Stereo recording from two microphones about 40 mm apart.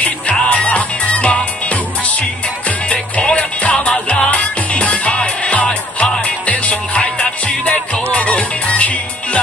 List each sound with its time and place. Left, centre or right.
0.0 s music: left
2.9 s music: left